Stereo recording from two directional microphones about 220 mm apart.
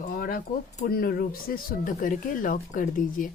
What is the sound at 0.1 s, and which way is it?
Speech, 40° left (ahead or behind).